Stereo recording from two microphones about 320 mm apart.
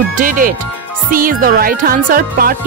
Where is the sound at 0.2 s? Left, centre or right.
Right.